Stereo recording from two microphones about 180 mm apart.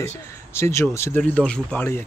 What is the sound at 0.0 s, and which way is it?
Speech, 15° left (ahead or behind).